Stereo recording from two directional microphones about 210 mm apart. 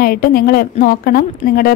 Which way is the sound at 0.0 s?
45° left (ahead or behind).